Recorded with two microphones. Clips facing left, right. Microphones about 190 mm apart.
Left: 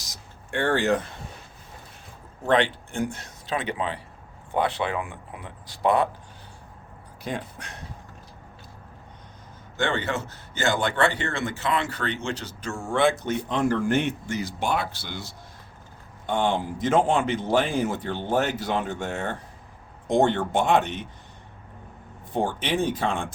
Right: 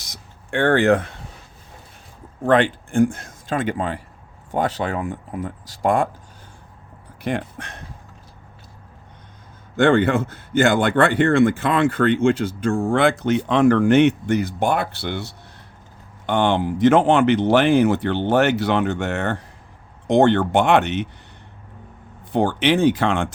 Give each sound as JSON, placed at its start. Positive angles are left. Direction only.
{"t": 0.5, "sound": "speech", "side_deg": -60}
{"t": 2.5, "sound": "speech", "side_deg": -50}
{"t": 7.2, "sound": "speech", "side_deg": -55}
{"t": 9.7, "sound": "speech", "side_deg": -55}
{"t": 12.9, "sound": "speech", "side_deg": -80}
{"t": 16.2, "sound": "speech", "side_deg": -75}
{"t": 22.3, "sound": "speech", "side_deg": -80}